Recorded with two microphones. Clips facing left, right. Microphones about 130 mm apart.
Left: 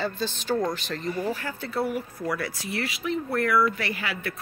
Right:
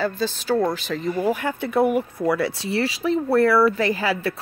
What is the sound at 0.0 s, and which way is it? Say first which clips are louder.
Speech: right 5 dB; 5° right (ahead or behind).